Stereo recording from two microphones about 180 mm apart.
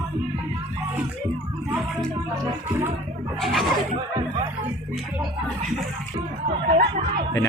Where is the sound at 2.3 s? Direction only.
20° right (ahead or behind).